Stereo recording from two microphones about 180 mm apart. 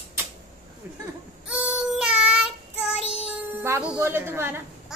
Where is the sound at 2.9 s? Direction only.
35° left (ahead or behind).